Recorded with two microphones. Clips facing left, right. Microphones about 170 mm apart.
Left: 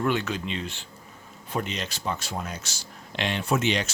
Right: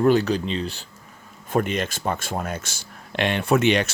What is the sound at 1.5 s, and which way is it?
Speech, 50° right (ahead or behind).